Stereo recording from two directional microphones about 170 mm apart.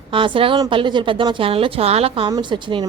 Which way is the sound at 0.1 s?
30° right (ahead or behind).